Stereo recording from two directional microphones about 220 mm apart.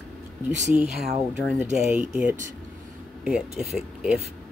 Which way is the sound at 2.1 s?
5° right (ahead or behind).